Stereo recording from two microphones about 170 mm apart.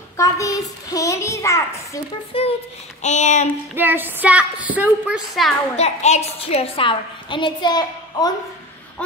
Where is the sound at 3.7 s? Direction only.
10° right (ahead or behind).